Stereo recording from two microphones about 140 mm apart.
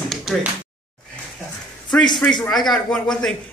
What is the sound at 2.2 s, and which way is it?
A man's voice, 5° left (ahead or behind).